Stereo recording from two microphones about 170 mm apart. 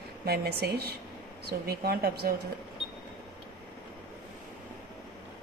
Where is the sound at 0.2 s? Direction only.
65° right (ahead or behind).